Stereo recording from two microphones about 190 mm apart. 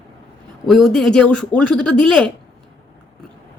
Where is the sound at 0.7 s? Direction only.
Centre (ahead or behind).